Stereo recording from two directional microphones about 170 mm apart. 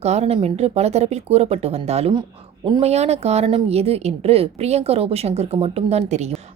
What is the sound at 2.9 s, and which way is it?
A woman's voice, 40° right (ahead or behind).